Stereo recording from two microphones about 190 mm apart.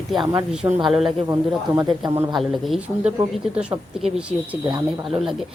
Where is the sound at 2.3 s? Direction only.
Centre (ahead or behind).